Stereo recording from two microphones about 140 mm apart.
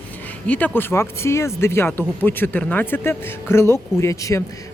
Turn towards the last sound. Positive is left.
turn(degrees=20)  # may be behind; listen again after turning